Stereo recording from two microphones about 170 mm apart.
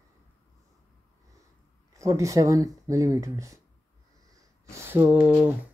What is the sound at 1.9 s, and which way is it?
Speech, 20° right (ahead or behind).